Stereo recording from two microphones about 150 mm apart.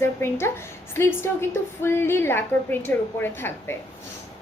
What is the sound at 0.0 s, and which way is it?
A woman's voice, 15° left (ahead or behind).